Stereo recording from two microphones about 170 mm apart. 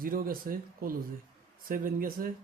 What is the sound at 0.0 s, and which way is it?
Speech, 60° right (ahead or behind).